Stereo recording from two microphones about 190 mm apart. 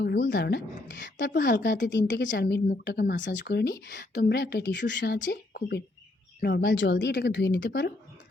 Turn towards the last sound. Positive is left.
turn(degrees=60)  # may be behind; listen again after turning